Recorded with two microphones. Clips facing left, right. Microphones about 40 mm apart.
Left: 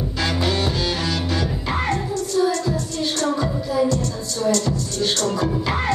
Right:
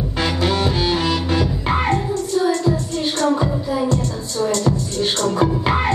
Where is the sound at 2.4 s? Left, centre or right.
Right.